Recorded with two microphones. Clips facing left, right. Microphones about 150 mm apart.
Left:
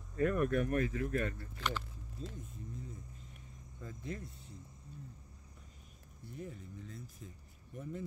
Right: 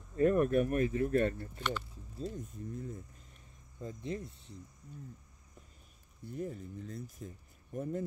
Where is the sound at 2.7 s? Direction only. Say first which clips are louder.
Right 7 dB; 55° right (ahead or behind).